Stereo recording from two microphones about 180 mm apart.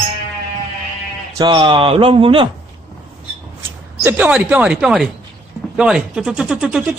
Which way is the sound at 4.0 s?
10° right (ahead or behind).